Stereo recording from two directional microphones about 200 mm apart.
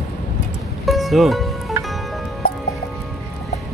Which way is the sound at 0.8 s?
Centre (ahead or behind).